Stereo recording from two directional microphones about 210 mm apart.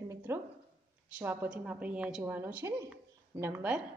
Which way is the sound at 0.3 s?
10° right (ahead or behind).